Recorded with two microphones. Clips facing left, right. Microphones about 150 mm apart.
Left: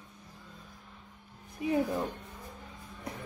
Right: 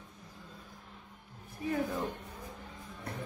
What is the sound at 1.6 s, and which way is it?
Speech, 20° left (ahead or behind).